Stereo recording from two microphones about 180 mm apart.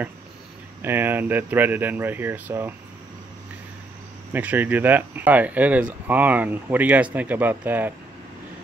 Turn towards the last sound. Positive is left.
turn(degrees=-10)  # may be behind; listen again after turning